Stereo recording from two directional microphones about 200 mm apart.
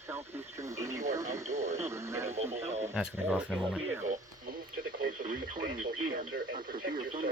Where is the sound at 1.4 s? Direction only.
35° right (ahead or behind).